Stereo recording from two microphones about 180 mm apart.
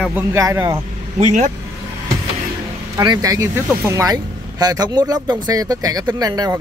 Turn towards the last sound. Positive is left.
turn(degrees=-20)  # may be behind; listen again after turning